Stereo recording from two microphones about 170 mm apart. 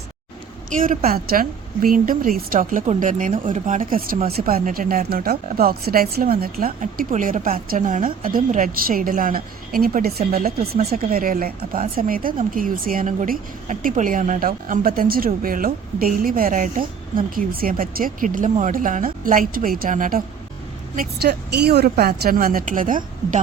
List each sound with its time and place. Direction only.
0.7 s a woman's voice: 55° right (ahead or behind)